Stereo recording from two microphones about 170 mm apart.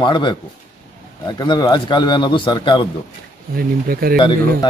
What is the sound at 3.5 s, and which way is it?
Speech, 60° right (ahead or behind).